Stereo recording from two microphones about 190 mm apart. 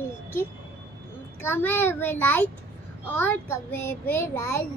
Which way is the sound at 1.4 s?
10° left (ahead or behind).